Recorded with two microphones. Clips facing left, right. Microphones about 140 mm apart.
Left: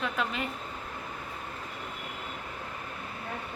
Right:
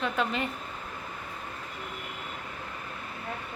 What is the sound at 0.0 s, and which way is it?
Speech, centre (ahead or behind).